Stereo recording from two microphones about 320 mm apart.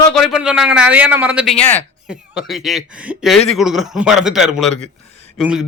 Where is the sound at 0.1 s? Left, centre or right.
Centre.